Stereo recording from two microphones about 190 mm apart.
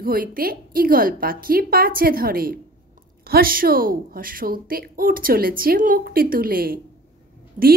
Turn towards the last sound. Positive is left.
turn(degrees=-45)  # may be behind; listen again after turning